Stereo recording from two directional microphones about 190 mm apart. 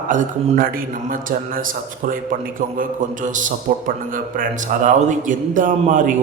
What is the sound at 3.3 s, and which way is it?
A man's voice, 45° right (ahead or behind).